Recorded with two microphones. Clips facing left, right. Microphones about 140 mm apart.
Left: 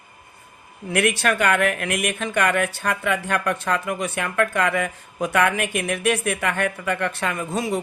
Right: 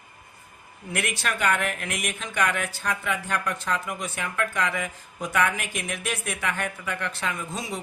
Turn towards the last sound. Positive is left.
turn(degrees=60)  # may be behind; listen again after turning